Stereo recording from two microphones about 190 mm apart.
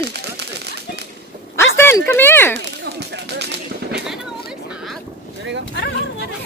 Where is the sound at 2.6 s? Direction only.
65° right (ahead or behind).